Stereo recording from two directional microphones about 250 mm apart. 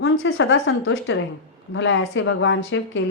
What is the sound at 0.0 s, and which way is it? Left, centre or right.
A woman's voice, left.